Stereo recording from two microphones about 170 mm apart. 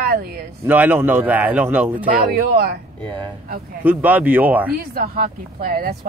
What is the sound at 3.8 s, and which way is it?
Speech, 10° right (ahead or behind).